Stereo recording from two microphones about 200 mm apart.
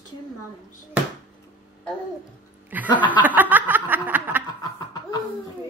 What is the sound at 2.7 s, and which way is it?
Speech, 10° right (ahead or behind).